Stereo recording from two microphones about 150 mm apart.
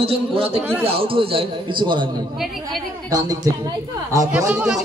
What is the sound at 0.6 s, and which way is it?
Speech, 10° right (ahead or behind).